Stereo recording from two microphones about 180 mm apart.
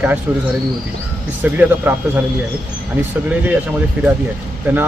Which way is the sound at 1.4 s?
10° right (ahead or behind).